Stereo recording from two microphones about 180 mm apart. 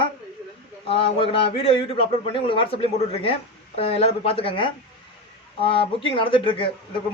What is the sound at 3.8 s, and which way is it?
A man's voice, 35° left (ahead or behind).